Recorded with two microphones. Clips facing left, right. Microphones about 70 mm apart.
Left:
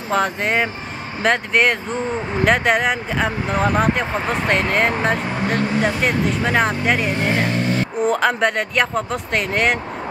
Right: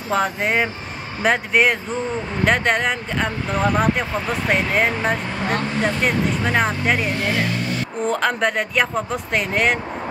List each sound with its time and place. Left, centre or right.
0.1 s speech: centre
7.2 s speech: left
8.0 s speech: centre